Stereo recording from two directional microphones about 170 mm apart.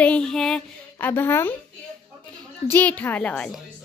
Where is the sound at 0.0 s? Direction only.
5° left (ahead or behind).